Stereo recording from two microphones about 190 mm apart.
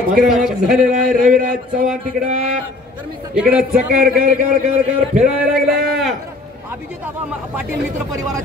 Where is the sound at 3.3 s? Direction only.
5° right (ahead or behind).